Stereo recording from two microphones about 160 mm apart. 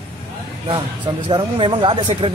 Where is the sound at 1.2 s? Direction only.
35° right (ahead or behind).